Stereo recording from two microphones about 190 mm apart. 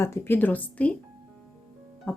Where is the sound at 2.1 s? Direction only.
5° left (ahead or behind).